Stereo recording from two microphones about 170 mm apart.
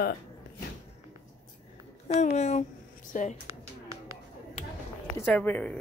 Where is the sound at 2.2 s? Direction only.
40° left (ahead or behind).